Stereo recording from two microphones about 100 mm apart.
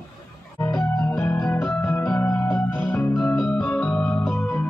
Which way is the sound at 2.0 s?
15° left (ahead or behind).